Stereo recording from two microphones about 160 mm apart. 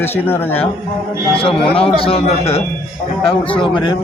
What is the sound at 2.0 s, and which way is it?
Speech, 35° left (ahead or behind).